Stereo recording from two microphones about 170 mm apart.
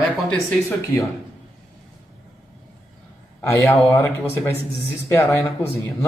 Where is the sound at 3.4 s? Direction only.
10° left (ahead or behind).